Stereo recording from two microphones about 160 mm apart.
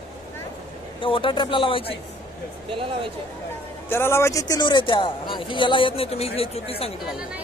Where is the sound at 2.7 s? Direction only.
35° right (ahead or behind).